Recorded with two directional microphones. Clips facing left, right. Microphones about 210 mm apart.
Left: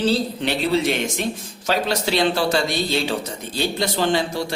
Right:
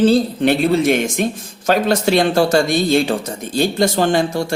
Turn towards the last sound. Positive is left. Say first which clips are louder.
# right 5 dB
turn(degrees=-50)  # may be behind; listen again after turning